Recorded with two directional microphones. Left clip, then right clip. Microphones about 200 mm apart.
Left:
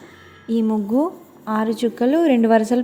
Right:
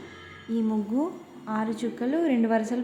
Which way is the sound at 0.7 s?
20° left (ahead or behind).